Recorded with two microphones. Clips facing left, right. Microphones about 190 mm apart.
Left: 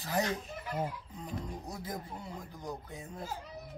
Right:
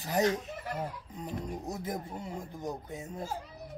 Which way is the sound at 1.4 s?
20° right (ahead or behind).